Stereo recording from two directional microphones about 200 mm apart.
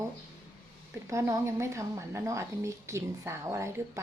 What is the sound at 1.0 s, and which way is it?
A woman's voice, 15° right (ahead or behind).